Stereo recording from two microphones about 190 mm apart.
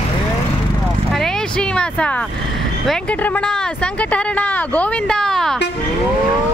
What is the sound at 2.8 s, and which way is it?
Speech, 5° left (ahead or behind).